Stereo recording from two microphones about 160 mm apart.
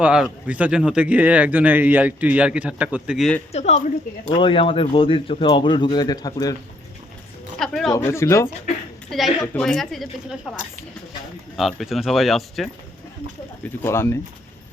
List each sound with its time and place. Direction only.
0.0 s speech: 5° right (ahead or behind)
3.5 s speech: 45° left (ahead or behind)
4.3 s speech: 30° left (ahead or behind)
7.6 s a woman's voice: centre (ahead or behind)
7.9 s speech: 15° left (ahead or behind)
9.0 s a woman's voice: centre (ahead or behind)
13.8 s speech: 15° left (ahead or behind)